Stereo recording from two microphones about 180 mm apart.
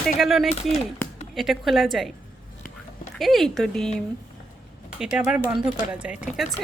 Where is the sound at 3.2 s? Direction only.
Centre (ahead or behind).